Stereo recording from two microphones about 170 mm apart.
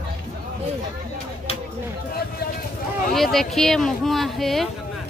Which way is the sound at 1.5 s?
35° left (ahead or behind).